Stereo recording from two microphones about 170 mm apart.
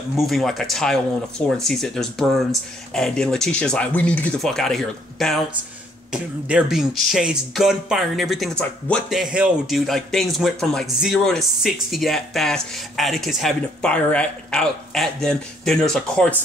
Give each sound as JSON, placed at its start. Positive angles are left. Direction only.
{"t": 0.1, "sound": "speech", "side_deg": 0}
{"t": 9.1, "sound": "speech", "side_deg": -5}